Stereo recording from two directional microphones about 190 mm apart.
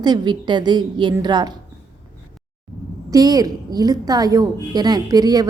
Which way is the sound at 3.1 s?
20° right (ahead or behind).